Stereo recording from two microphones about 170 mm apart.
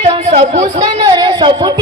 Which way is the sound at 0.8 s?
25° right (ahead or behind).